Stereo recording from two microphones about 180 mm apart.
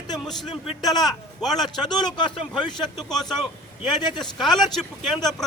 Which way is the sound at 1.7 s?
25° left (ahead or behind).